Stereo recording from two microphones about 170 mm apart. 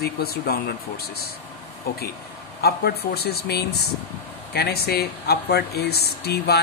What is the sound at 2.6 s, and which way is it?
Speech, 70° left (ahead or behind).